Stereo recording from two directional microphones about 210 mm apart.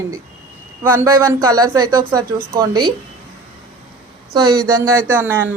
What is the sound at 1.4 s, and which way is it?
Speech, 15° right (ahead or behind).